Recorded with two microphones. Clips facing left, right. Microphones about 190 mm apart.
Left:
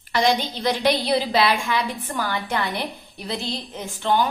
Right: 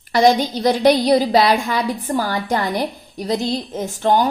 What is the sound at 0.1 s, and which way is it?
A woman's voice, 45° right (ahead or behind).